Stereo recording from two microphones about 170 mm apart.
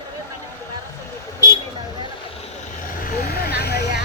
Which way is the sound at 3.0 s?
60° left (ahead or behind).